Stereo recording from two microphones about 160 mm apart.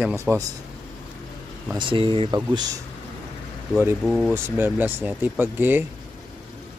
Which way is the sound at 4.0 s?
Centre (ahead or behind).